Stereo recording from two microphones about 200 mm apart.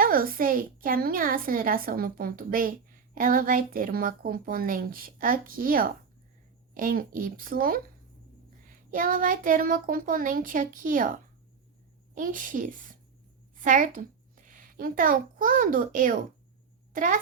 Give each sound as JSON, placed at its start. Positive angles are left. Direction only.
{"t": 0.0, "sound": "a woman's voice", "side_deg": -45}
{"t": 12.1, "sound": "a woman's voice", "side_deg": -40}